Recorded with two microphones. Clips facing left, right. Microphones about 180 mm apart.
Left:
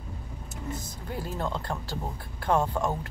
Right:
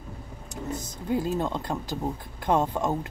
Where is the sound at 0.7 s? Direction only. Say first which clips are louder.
Right 8 dB; 20° right (ahead or behind).